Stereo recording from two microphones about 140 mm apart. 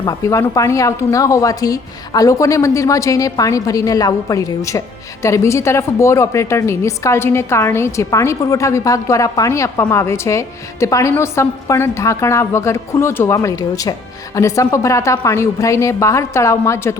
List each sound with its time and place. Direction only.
0.0 s a woman's voice: 25° left (ahead or behind)